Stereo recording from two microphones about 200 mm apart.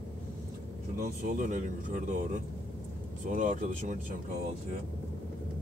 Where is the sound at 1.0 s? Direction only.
40° right (ahead or behind).